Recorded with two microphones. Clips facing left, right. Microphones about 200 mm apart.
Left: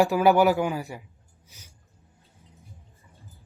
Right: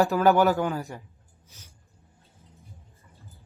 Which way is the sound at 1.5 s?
15° left (ahead or behind).